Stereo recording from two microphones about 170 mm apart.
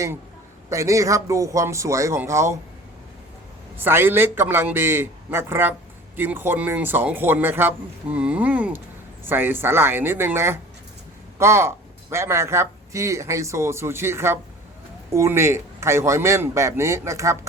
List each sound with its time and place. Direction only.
0.7 s speech: 20° right (ahead or behind)
3.8 s speech: 10° right (ahead or behind)